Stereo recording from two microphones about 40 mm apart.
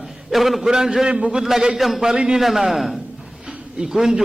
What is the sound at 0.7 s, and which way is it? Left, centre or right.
A man's voice, centre.